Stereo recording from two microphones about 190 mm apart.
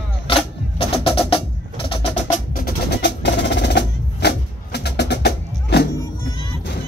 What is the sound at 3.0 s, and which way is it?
Music, 65° left (ahead or behind).